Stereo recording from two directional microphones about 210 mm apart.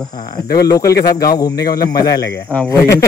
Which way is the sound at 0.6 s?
15° left (ahead or behind).